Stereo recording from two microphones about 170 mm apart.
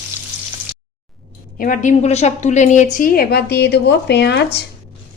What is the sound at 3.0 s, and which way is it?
Speech, 65° left (ahead or behind).